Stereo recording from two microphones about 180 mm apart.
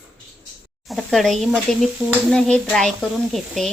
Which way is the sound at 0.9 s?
Centre (ahead or behind).